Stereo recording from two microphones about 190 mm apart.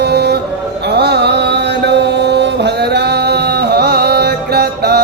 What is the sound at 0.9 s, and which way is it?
Mantra, 60° right (ahead or behind).